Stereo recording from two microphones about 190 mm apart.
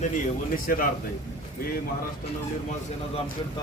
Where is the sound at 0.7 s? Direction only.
50° left (ahead or behind).